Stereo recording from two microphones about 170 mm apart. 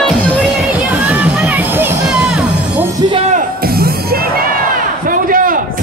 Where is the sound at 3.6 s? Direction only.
65° right (ahead or behind).